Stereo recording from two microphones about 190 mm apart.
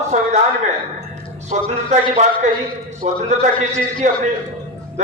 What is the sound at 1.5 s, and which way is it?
A man's voice, 40° right (ahead or behind).